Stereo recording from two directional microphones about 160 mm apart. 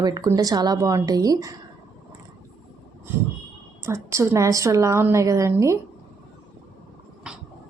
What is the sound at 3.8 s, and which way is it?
A woman's voice, 15° right (ahead or behind).